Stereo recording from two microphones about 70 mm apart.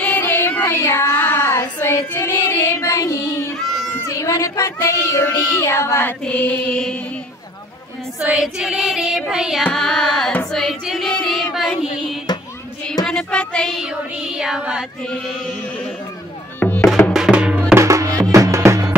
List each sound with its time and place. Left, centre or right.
0.0 s child singing: left
6.2 s mantra: left
6.7 s carnatic music: centre
8.2 s child singing: centre
9.8 s carnatic music: centre
10.5 s singing: centre
11.1 s child singing: centre
12.3 s a sound: left
13.0 s child singing: centre
13.8 s child singing: centre
16.5 s music: left
17.1 s music: centre
17.7 s music: right